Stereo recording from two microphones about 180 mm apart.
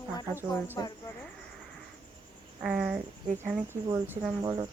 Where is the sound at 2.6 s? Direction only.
5° right (ahead or behind).